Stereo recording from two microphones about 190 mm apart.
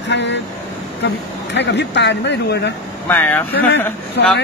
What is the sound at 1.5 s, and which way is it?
Speech, 65° left (ahead or behind).